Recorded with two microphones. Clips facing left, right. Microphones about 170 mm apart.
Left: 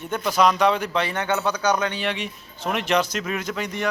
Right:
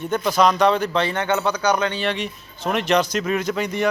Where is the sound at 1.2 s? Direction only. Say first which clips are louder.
Right 2 dB; 20° right (ahead or behind).